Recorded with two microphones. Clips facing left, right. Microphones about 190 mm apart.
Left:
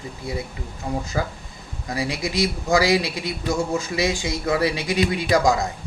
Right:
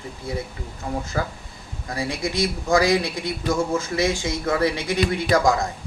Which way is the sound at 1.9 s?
10° left (ahead or behind).